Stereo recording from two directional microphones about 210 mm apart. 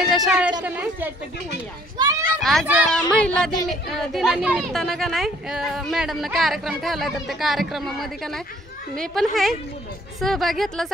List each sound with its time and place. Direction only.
0.0 s a sound: centre (ahead or behind)
0.7 s a woman's voice: 10° right (ahead or behind)
2.0 s children playing: 15° right (ahead or behind)
2.4 s a woman's voice: centre (ahead or behind)
3.2 s a woman's voice: 5° left (ahead or behind)